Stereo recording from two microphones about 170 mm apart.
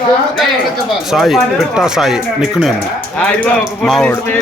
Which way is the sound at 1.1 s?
Centre (ahead or behind).